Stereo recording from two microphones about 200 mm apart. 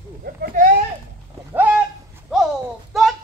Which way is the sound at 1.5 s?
10° right (ahead or behind).